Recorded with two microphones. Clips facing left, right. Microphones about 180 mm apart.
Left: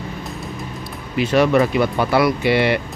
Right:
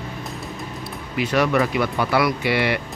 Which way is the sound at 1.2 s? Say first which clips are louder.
Left 4 dB; 25° left (ahead or behind).